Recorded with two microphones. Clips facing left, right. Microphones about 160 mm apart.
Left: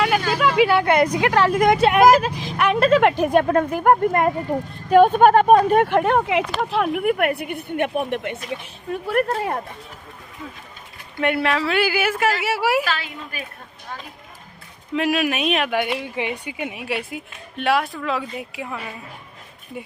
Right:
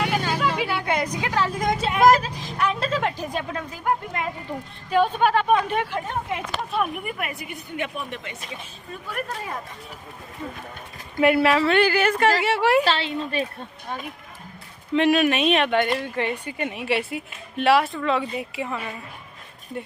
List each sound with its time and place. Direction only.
0.3 s speech: 75° left (ahead or behind); by 5.9 s 45° left (ahead or behind)
5.9 s speech: 80° left
11.2 s a woman's voice: centre (ahead or behind)
12.8 s a woman's voice: 30° right (ahead or behind)
14.9 s speech: centre (ahead or behind)